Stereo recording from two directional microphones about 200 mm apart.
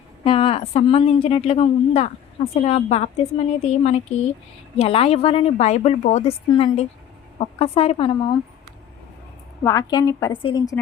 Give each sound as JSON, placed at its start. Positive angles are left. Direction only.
{"t": 0.3, "sound": "speech", "side_deg": 25}
{"t": 9.6, "sound": "a woman's voice", "side_deg": 15}